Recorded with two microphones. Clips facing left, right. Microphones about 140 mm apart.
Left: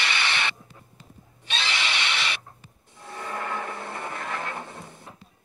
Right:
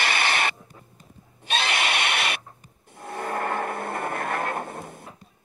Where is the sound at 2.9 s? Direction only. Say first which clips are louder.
Right 5 dB; 50° right (ahead or behind).